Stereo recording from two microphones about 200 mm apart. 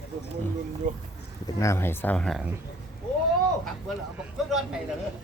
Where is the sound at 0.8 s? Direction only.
40° right (ahead or behind).